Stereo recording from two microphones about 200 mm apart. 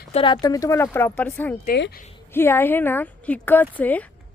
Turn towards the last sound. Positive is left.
turn(degrees=10)  # may be behind; listen again after turning